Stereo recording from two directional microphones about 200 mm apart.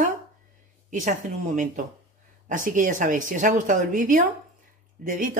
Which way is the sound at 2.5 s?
40° right (ahead or behind).